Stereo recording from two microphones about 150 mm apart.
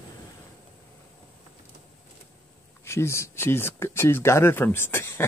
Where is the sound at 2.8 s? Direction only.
15° left (ahead or behind).